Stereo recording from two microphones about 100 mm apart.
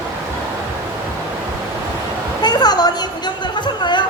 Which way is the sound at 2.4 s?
45° left (ahead or behind).